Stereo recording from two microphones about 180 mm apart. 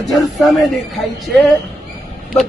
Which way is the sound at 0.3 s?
Centre (ahead or behind).